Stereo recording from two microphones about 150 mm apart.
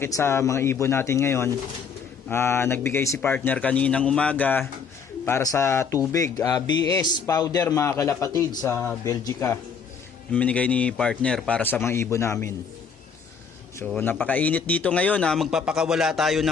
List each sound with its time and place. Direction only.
0.0 s a man's voice: 15° left (ahead or behind)
10.3 s a man's voice: 10° left (ahead or behind)
13.9 s a man's voice: 10° left (ahead or behind)
15.4 s a man's voice: 5° right (ahead or behind)